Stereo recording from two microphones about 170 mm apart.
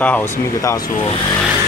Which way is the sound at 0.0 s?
10° left (ahead or behind).